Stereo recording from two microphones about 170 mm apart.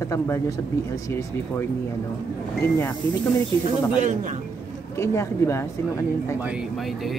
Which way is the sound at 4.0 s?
45° right (ahead or behind).